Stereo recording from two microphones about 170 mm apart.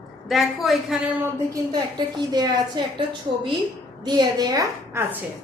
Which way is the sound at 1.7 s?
25° right (ahead or behind).